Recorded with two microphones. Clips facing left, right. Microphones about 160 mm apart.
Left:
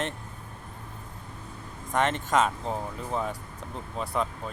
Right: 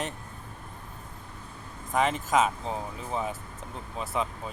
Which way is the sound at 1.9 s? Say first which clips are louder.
Even; centre (ahead or behind).